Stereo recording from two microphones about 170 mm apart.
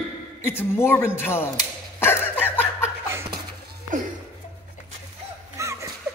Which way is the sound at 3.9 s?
50° right (ahead or behind).